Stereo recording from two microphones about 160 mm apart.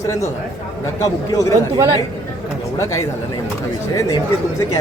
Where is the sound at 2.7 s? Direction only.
20° left (ahead or behind).